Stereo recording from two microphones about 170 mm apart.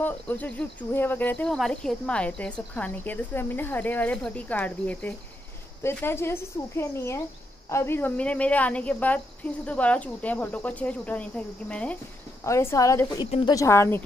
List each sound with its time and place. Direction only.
0.0 s a woman's voice: 10° left (ahead or behind)